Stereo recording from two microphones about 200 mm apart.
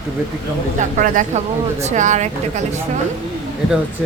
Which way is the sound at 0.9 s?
40° right (ahead or behind).